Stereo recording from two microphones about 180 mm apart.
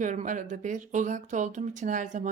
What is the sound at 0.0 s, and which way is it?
A woman's voice, 45° right (ahead or behind).